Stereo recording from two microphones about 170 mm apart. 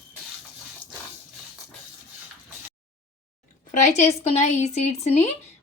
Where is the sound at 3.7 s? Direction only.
45° left (ahead or behind).